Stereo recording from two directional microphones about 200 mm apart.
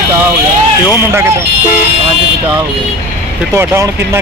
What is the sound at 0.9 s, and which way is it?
Speech, 10° right (ahead or behind).